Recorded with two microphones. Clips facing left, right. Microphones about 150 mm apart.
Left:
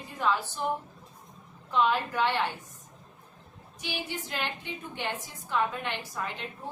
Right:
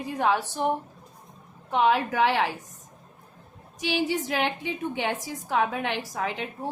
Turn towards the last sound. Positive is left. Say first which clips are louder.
# right 6 dB
turn(degrees=-80)